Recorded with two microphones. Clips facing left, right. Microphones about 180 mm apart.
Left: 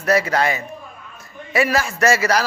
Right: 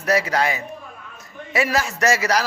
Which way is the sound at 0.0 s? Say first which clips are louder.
Left 2 dB; 15° right (ahead or behind).